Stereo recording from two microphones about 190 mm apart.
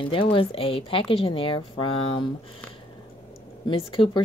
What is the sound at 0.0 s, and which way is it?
Speech, 30° left (ahead or behind).